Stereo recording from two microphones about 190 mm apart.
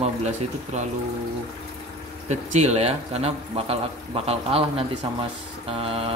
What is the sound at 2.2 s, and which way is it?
Speech, 35° right (ahead or behind).